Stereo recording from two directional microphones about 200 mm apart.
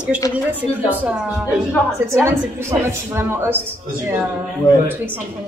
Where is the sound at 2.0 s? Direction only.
15° right (ahead or behind).